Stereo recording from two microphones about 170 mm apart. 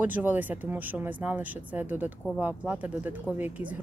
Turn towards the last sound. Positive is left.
turn(degrees=-10)  # may be behind; listen again after turning